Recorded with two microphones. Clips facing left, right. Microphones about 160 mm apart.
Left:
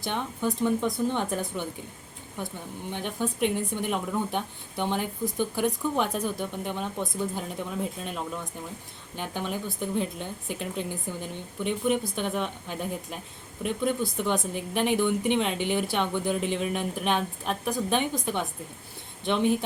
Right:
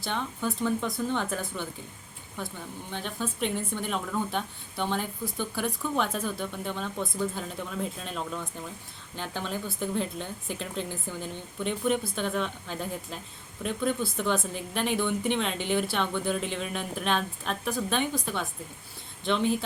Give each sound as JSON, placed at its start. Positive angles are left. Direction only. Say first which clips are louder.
{"t": 0.0, "sound": "speech", "louder": "left 2 dB", "side_deg": 15}